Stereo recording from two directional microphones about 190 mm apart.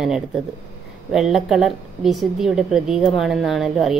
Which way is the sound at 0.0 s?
5° right (ahead or behind).